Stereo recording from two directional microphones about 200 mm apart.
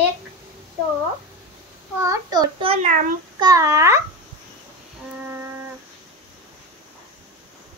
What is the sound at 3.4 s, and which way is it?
Babbling, 15° right (ahead or behind).